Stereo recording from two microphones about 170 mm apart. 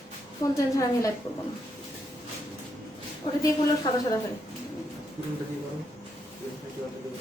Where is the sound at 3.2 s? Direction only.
30° left (ahead or behind).